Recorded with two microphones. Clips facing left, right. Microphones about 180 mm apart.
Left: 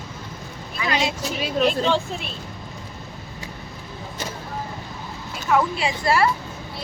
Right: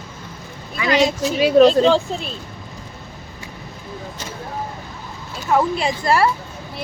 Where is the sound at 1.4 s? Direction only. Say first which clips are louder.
Right 10 dB; 90° right.